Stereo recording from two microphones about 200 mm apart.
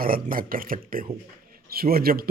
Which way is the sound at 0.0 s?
45° right (ahead or behind).